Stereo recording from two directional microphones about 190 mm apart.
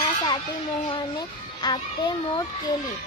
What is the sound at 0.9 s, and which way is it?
A child's voice, 25° left (ahead or behind).